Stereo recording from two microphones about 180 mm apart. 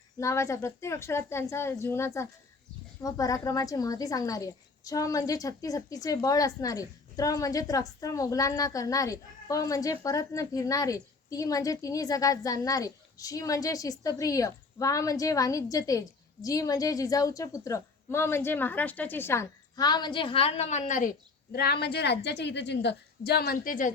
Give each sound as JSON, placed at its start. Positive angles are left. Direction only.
{"t": 0.2, "sound": "a woman's voice", "side_deg": 15}
{"t": 21.5, "sound": "a woman's voice", "side_deg": 60}